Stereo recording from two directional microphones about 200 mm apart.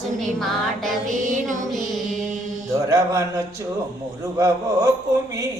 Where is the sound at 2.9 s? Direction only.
15° right (ahead or behind).